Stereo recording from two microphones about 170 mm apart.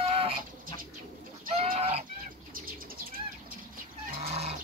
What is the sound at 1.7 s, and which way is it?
Goose, 35° right (ahead or behind).